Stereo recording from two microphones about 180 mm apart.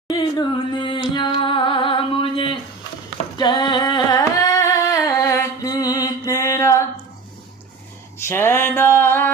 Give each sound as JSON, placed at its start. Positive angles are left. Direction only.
{"t": 0.1, "sound": "singing", "side_deg": 25}
{"t": 6.0, "sound": "mantra", "side_deg": 15}
{"t": 8.3, "sound": "music", "side_deg": 15}